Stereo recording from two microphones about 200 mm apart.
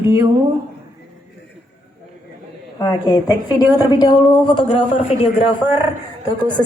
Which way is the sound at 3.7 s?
20° left (ahead or behind).